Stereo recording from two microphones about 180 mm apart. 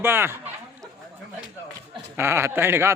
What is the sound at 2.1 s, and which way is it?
Speech, 15° right (ahead or behind).